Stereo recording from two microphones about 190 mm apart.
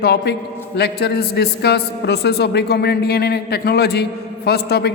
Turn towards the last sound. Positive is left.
turn(degrees=55)  # may be behind; listen again after turning